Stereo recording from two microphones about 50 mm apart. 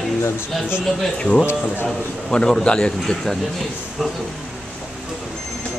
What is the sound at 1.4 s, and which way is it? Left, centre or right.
Speech, left.